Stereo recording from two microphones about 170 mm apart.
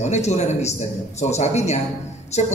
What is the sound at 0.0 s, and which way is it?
Speech, 40° left (ahead or behind).